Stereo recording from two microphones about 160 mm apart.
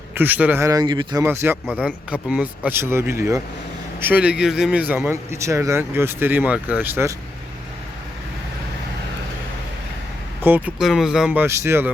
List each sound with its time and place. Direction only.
0.1 s speech: 10° right (ahead or behind); by 1.2 s 25° right (ahead or behind)
1.2 s speech: 15° right (ahead or behind)
10.4 s speech: 10° right (ahead or behind)